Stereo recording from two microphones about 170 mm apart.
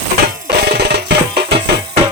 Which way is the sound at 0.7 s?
75° right (ahead or behind).